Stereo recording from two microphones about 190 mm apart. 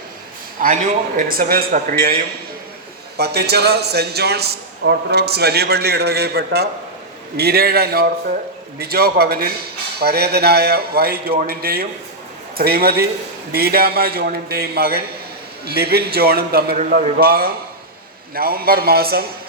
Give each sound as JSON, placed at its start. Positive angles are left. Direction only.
{"t": 0.6, "sound": "a man's voice", "side_deg": -45}
{"t": 3.2, "sound": "a man's voice", "side_deg": -60}